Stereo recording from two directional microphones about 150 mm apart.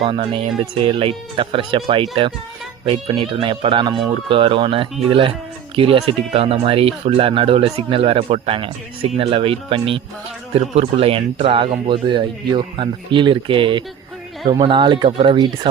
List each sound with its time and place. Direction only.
0.0 s speech: 35° right (ahead or behind)